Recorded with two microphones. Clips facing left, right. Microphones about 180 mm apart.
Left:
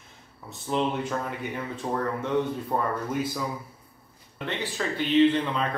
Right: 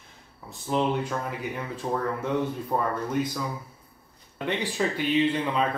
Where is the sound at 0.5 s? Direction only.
Centre (ahead or behind).